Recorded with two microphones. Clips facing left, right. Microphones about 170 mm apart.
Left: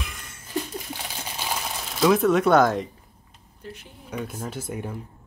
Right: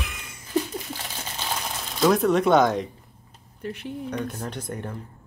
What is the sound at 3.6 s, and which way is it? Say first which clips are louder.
Speech: right 7 dB; 65° right (ahead or behind).